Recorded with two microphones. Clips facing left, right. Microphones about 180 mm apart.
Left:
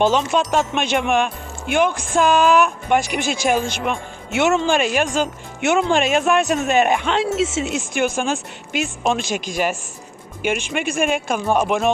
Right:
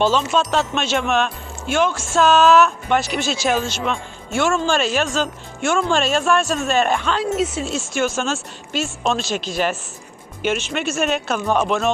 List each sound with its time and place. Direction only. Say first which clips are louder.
0.0 s speech: left 1 dB; 15° left (ahead or behind)